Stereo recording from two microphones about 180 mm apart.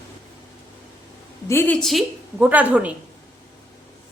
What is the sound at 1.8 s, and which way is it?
A woman's voice, 5° right (ahead or behind).